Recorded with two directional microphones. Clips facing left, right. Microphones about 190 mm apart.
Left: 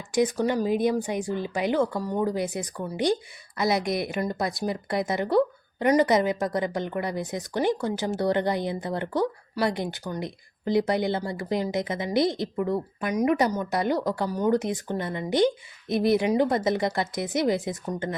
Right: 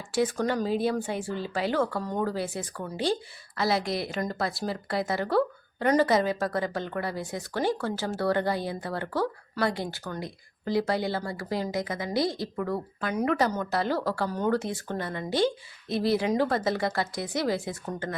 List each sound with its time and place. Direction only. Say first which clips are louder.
0.1 s a woman's voice: left 3 dB; 15° left (ahead or behind)